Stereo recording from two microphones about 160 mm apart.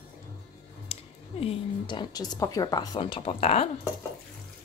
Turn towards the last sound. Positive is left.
turn(degrees=40)  # may be behind; listen again after turning